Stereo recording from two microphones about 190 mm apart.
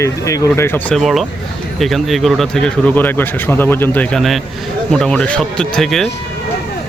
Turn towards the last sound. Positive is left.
turn(degrees=0)  # may be behind; listen again after turning